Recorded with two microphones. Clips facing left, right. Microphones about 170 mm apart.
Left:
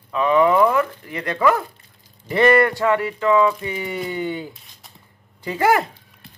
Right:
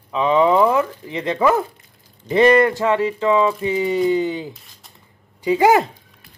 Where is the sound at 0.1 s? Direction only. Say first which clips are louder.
Right 1 dB; 20° right (ahead or behind).